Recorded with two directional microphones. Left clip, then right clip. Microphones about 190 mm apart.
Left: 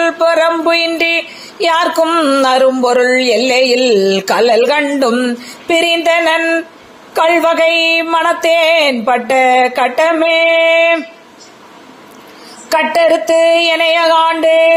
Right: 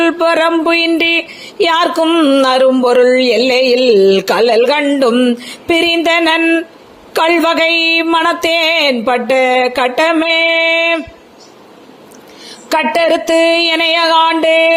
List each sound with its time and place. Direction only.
0.0 s speech: 45° right (ahead or behind)
12.6 s speech: 50° right (ahead or behind)